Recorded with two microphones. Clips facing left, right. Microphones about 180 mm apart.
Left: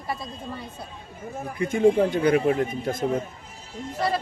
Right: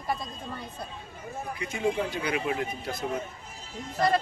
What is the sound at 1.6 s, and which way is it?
Speech, 50° left (ahead or behind).